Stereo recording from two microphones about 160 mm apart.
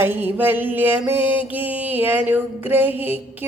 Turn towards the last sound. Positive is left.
turn(degrees=-10)  # may be behind; listen again after turning